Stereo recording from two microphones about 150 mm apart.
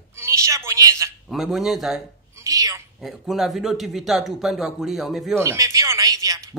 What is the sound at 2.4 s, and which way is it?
Speech, 20° right (ahead or behind).